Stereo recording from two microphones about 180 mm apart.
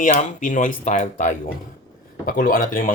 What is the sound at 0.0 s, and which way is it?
Speech, 45° left (ahead or behind).